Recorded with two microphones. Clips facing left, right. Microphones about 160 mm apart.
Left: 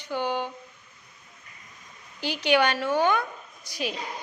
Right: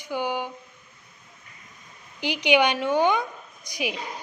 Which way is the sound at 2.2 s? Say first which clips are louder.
Right 2 dB; 15° right (ahead or behind).